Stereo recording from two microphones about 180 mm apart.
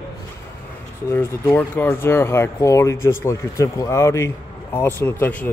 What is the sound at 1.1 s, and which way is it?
Speech, 10° left (ahead or behind).